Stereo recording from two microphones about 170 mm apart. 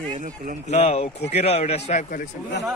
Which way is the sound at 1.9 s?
50° left (ahead or behind).